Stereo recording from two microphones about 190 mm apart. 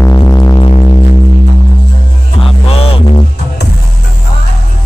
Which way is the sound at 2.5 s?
30° left (ahead or behind).